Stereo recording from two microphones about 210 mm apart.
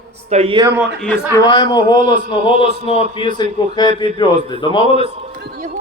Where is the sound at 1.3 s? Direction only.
20° left (ahead or behind).